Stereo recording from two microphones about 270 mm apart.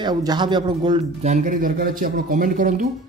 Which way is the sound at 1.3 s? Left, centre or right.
Right.